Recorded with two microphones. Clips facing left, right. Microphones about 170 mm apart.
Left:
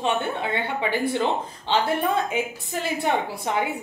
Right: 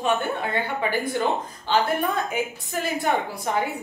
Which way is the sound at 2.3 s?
25° left (ahead or behind).